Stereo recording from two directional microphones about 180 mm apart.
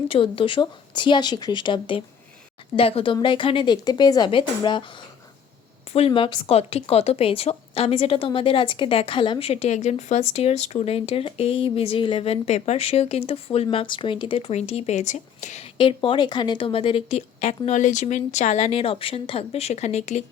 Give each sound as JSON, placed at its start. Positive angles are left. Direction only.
{"t": 0.1, "sound": "speech", "side_deg": 30}